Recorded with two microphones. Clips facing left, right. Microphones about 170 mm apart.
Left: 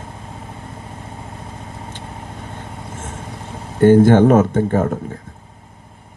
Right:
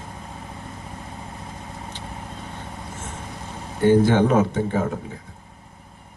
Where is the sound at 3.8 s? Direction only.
50° left (ahead or behind).